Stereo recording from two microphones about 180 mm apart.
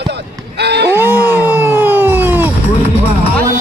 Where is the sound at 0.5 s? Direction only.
65° right (ahead or behind).